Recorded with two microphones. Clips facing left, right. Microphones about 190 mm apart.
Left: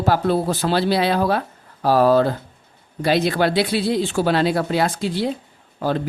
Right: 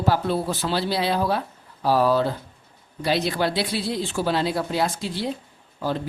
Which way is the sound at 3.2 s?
70° left (ahead or behind).